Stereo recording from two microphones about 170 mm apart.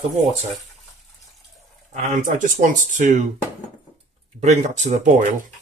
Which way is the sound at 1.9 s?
50° right (ahead or behind).